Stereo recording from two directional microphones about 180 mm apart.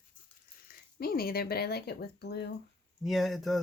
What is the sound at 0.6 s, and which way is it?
Speech, 55° left (ahead or behind).